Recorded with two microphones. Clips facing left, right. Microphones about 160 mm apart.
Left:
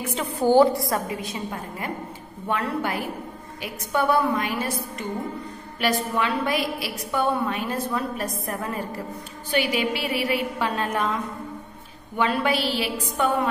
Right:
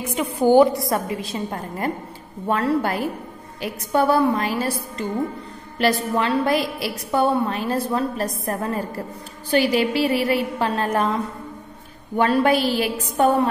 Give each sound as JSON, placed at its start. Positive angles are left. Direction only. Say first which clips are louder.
{"t": 0.1, "sound": "a woman's voice", "louder": "right 3 dB", "side_deg": -15}
{"t": 1.3, "sound": "a woman's voice", "louder": "right 4 dB", "side_deg": -35}
{"t": 5.8, "sound": "a woman's voice", "louder": "right 4 dB", "side_deg": -40}
{"t": 12.2, "sound": "a woman's voice", "louder": "right 5 dB", "side_deg": -45}